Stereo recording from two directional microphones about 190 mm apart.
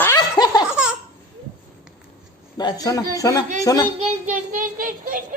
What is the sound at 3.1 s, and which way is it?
Speech, 20° left (ahead or behind).